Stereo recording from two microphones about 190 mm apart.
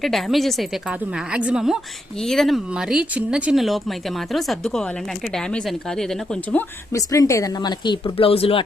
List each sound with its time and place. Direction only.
0.0 s speech: centre (ahead or behind); by 8.6 s 30° left (ahead or behind)